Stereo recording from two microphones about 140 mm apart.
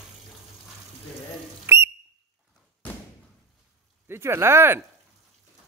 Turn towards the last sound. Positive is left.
turn(degrees=-15)  # may be behind; listen again after turning